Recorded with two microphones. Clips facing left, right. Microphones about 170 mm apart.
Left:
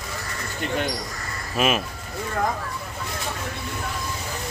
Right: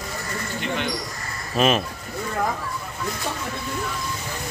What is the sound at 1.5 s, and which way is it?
Speech, 5° left (ahead or behind).